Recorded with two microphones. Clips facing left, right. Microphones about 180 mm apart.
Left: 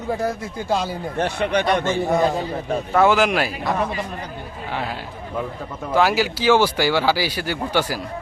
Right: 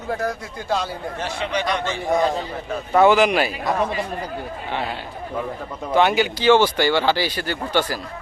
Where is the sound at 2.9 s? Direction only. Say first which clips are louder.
Right 2 dB; centre (ahead or behind).